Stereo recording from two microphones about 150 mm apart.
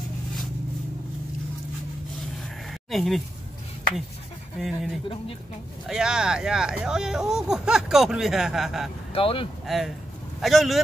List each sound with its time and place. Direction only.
2.9 s speech: centre (ahead or behind)
4.6 s speech: centre (ahead or behind)
9.1 s speech: 35° left (ahead or behind)
9.7 s speech: centre (ahead or behind)